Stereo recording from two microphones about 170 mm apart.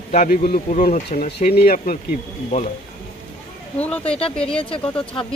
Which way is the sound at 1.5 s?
60° left (ahead or behind).